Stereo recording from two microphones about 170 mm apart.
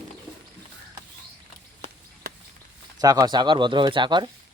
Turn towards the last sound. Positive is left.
turn(degrees=-25)  # may be behind; listen again after turning